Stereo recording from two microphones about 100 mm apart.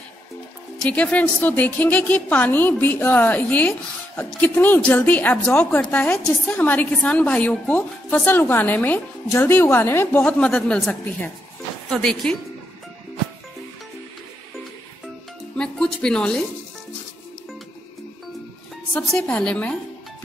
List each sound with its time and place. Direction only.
0.8 s a woman's voice: 15° left (ahead or behind)
15.5 s music: 5° left (ahead or behind)
18.9 s a woman's voice: 5° left (ahead or behind)